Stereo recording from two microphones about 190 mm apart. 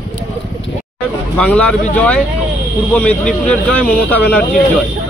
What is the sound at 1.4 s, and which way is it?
Speech, 5° left (ahead or behind).